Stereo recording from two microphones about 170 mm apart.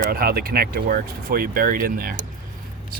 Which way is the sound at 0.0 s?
60° right (ahead or behind).